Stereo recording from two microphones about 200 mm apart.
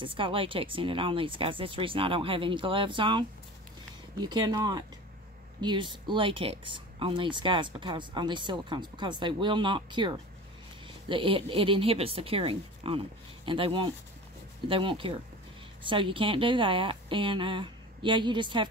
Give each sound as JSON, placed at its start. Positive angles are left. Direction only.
{"t": 0.0, "sound": "speech", "side_deg": -25}